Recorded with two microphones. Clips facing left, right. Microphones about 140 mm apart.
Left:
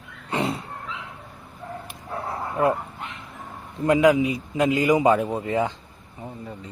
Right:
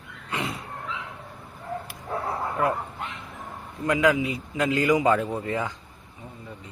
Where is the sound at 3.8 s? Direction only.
20° left (ahead or behind).